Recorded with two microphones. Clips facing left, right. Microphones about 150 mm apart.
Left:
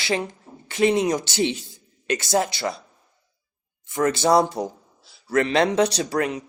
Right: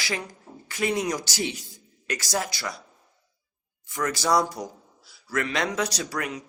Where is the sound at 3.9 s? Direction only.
25° left (ahead or behind).